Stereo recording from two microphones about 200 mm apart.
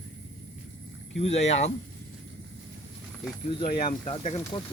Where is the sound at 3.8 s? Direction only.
30° left (ahead or behind).